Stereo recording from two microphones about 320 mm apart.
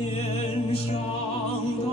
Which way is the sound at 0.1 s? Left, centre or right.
Centre.